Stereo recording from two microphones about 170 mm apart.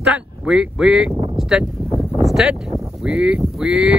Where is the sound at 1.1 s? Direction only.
35° right (ahead or behind).